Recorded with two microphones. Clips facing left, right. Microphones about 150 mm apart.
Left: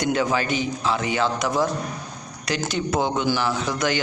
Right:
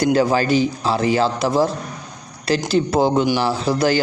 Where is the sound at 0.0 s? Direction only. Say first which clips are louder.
Right 6 dB; 35° right (ahead or behind).